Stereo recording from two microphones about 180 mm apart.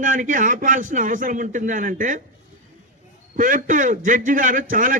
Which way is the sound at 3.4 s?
45° right (ahead or behind).